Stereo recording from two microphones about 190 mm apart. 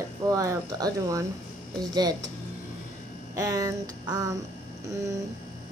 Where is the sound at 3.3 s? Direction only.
20° right (ahead or behind).